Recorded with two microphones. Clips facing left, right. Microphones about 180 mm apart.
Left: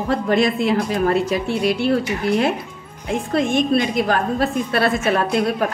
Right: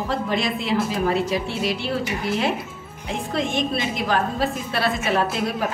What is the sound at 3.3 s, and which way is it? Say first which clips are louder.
A woman's voice: left 7 dB; 50° left (ahead or behind).